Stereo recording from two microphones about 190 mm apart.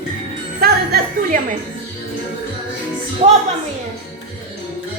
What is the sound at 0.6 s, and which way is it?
Music, 55° right (ahead or behind).